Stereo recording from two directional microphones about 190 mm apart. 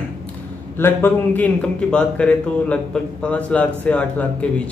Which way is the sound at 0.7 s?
10° left (ahead or behind).